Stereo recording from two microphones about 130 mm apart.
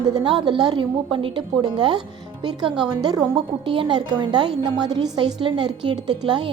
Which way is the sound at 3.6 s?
40° right (ahead or behind).